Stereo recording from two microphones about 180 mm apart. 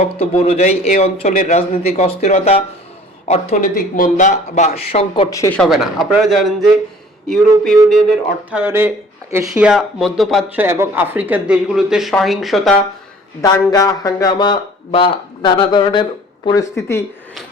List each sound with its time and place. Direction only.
0.0 s speech: 35° left (ahead or behind)
5.3 s speech: 15° left (ahead or behind)
5.5 s speech: centre (ahead or behind)
8.4 s speech: 10° right (ahead or behind)
10.6 s speech: 10° right (ahead or behind)
13.4 s speech: 20° left (ahead or behind)